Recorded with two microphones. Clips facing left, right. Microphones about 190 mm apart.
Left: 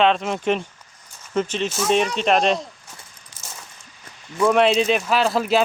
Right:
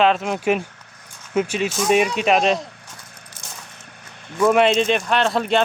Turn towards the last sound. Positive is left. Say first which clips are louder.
# even
turn(degrees=0)  # may be behind; listen again after turning